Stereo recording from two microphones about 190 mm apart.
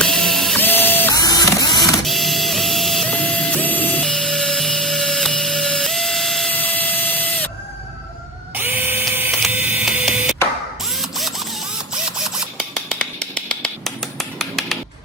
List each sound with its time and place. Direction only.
0.0 s printer: centre (ahead or behind)
1.1 s printer: 20° left (ahead or behind)
2.0 s printer: centre (ahead or behind)
8.5 s printer: 10° right (ahead or behind)
11.0 s a sound: centre (ahead or behind)
12.5 s a sound: centre (ahead or behind)